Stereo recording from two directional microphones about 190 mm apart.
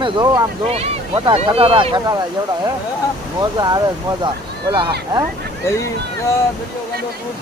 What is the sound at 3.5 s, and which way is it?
Speech, 20° right (ahead or behind).